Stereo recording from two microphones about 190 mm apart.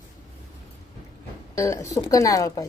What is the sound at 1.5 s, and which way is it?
Speech, 15° left (ahead or behind).